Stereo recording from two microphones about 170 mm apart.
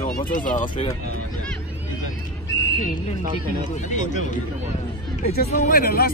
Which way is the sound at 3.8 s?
45° left (ahead or behind).